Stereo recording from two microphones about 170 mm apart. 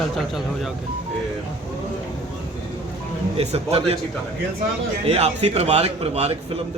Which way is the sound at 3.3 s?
40° right (ahead or behind).